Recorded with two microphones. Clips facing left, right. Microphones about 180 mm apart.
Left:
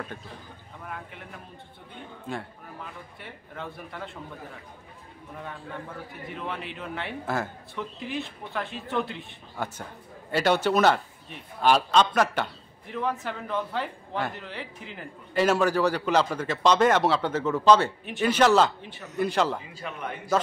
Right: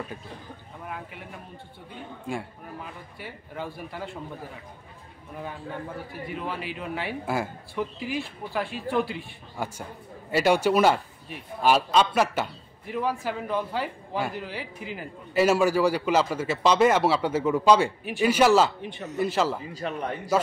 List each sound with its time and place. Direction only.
0.8 s speech: 5° right (ahead or behind)
2.2 s a man's voice: 10° right (ahead or behind)
6.3 s a man's voice: 5° right (ahead or behind)
19.7 s a man's voice: 35° right (ahead or behind)